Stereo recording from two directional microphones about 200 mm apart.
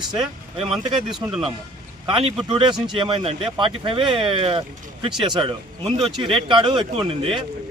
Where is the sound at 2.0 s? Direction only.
30° right (ahead or behind).